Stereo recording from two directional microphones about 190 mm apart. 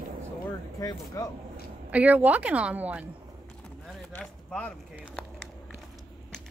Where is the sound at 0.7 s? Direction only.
20° left (ahead or behind).